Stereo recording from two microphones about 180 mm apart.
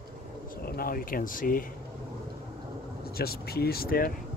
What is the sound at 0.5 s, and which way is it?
Speech, 55° left (ahead or behind).